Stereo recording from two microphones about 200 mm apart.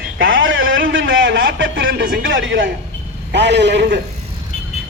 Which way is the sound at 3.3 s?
60° right (ahead or behind).